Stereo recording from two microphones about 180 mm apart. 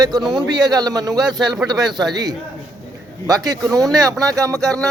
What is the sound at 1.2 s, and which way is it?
Speech, centre (ahead or behind).